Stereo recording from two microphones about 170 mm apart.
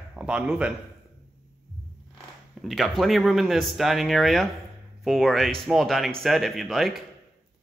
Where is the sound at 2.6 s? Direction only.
Centre (ahead or behind).